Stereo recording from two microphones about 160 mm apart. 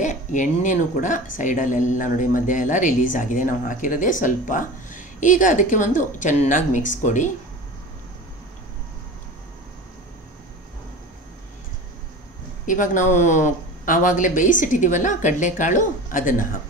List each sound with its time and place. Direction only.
0.0 s a woman's voice: 50° left (ahead or behind)
12.6 s a woman's voice: 55° left (ahead or behind)